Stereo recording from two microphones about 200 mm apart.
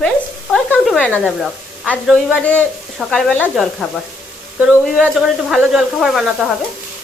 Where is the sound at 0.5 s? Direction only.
5° left (ahead or behind).